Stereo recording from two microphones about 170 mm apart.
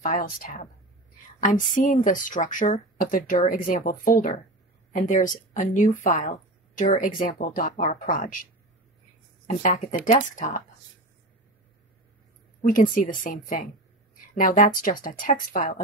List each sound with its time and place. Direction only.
0.0 s speech: 55° left (ahead or behind)
9.5 s speech: 45° left (ahead or behind)
12.6 s speech: 50° left (ahead or behind)